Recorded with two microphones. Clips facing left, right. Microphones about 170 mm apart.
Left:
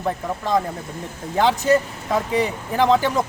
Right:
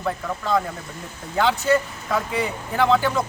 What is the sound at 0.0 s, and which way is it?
A man's voice, 20° left (ahead or behind).